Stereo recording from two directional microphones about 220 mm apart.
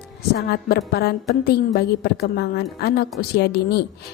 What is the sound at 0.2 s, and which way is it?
A woman's voice, 45° left (ahead or behind).